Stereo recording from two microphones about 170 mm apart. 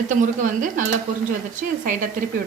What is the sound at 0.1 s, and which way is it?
Speech, 50° right (ahead or behind).